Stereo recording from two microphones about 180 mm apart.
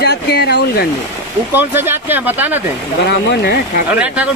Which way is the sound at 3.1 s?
65° left (ahead or behind).